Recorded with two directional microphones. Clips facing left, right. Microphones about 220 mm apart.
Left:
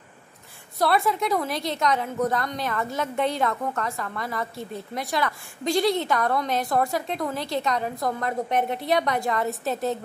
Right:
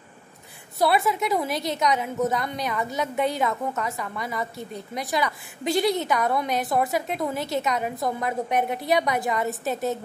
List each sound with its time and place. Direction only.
0.7 s a woman's voice: 5° right (ahead or behind)
6.7 s a woman's voice: 20° right (ahead or behind)
7.8 s a woman's voice: 5° right (ahead or behind)